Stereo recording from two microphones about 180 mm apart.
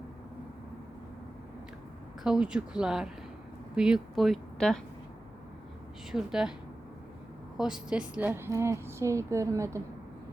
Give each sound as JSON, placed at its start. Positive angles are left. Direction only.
{"t": 2.2, "sound": "speech", "side_deg": -5}
{"t": 6.1, "sound": "speech", "side_deg": -5}
{"t": 7.6, "sound": "a woman's voice", "side_deg": -5}